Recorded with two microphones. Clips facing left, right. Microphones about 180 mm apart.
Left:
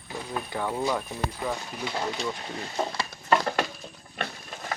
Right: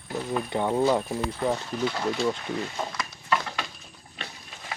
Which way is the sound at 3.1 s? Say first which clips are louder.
Left 7 dB; 50° left (ahead or behind).